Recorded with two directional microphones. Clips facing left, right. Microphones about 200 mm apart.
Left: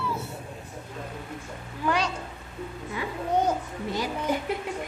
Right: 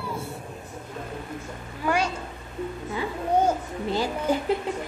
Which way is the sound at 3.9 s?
30° right (ahead or behind).